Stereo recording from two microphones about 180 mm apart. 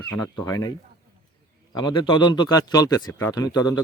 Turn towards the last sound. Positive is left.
turn(degrees=20)  # may be behind; listen again after turning